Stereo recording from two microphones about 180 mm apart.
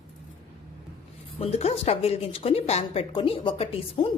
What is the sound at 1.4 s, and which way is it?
Speech, 35° left (ahead or behind).